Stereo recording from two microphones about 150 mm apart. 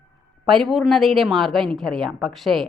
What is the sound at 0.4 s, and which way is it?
A woman's voice, centre (ahead or behind).